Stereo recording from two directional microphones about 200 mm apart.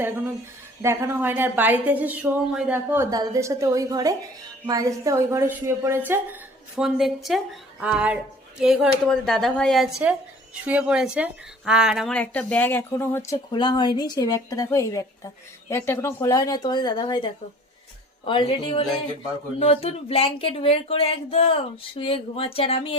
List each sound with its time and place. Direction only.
0.8 s a woman's voice: 15° right (ahead or behind); by 23.0 s 30° left (ahead or behind)